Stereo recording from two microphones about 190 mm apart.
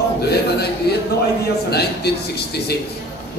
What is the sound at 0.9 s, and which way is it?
A man's voice, 55° left (ahead or behind).